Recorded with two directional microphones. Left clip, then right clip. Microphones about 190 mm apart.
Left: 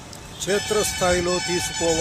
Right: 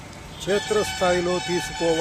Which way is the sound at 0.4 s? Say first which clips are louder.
Even; 10° left (ahead or behind).